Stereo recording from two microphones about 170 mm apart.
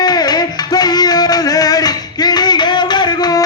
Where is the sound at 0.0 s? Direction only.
25° left (ahead or behind).